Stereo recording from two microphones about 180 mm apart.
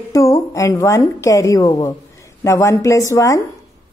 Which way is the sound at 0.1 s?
15° left (ahead or behind).